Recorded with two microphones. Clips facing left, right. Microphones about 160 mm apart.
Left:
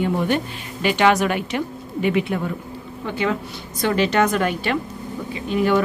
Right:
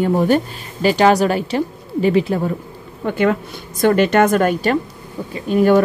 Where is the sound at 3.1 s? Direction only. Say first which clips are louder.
Right 6 dB; 50° right (ahead or behind).